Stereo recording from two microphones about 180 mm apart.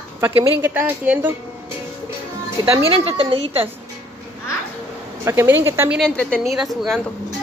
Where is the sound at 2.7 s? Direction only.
20° right (ahead or behind).